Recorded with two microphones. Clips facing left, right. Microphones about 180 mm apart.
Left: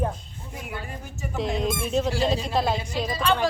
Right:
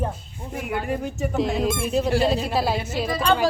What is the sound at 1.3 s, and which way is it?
Speech, centre (ahead or behind).